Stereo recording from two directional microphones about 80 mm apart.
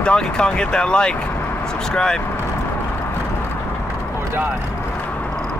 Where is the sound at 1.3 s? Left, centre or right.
Left.